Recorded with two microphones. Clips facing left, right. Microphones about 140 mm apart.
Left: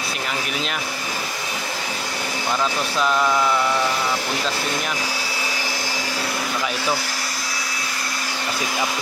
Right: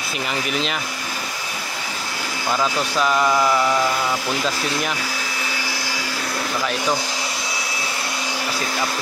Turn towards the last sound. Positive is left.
turn(degrees=-15)  # may be behind; listen again after turning